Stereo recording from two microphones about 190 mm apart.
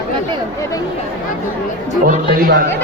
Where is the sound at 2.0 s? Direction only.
45° right (ahead or behind).